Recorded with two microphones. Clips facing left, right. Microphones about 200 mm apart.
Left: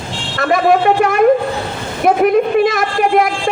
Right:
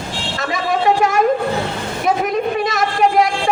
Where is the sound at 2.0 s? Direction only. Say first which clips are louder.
Left 7 dB; 55° left (ahead or behind).